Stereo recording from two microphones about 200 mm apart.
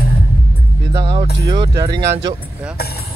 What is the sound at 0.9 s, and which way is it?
Music, 20° right (ahead or behind).